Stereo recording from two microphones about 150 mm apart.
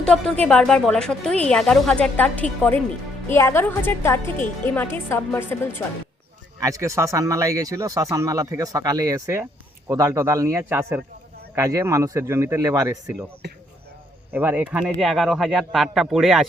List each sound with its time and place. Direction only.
0.0 s a woman's voice: 5° left (ahead or behind)
6.6 s speech: 20° right (ahead or behind)
13.4 s speech: 90° right
14.3 s speech: 10° right (ahead or behind)
14.9 s speech: centre (ahead or behind)